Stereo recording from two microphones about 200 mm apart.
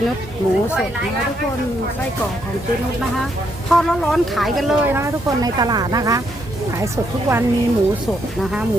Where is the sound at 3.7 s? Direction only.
5° left (ahead or behind).